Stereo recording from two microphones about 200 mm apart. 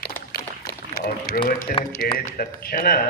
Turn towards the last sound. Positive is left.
turn(degrees=50)  # may be behind; listen again after turning